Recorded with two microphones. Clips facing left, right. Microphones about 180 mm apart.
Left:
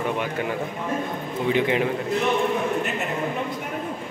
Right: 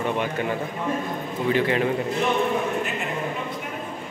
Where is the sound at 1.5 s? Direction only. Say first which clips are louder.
Even; 15° left (ahead or behind).